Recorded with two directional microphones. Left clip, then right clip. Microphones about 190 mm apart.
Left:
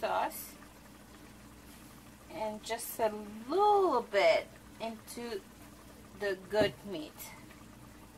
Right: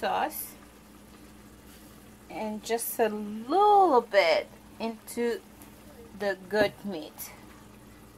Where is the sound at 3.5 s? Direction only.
45° right (ahead or behind).